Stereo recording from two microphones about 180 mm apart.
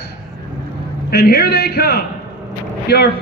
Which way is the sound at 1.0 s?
60° left (ahead or behind).